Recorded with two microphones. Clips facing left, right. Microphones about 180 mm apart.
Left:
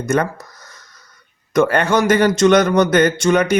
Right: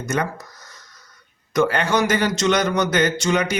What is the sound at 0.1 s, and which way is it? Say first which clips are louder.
Speech: left 5 dB; 55° left (ahead or behind).